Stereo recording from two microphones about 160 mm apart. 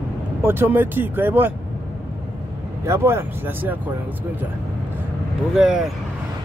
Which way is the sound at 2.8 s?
15° right (ahead or behind).